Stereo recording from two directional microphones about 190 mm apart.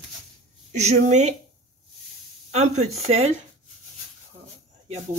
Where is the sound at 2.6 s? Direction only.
35° right (ahead or behind).